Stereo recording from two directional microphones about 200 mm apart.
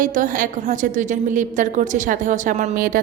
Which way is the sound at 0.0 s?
40° right (ahead or behind).